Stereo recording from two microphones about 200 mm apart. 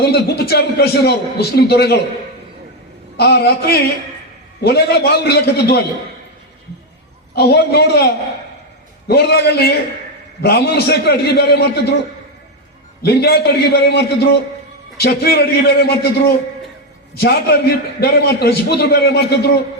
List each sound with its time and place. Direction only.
0.0 s a man's voice: 50° left (ahead or behind)
3.2 s a man's voice: 50° left (ahead or behind)
7.3 s a man's voice: 55° left (ahead or behind)
13.0 s a man's voice: 50° left (ahead or behind)